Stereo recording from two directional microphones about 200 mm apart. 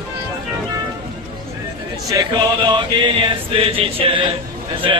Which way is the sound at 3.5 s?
25° right (ahead or behind).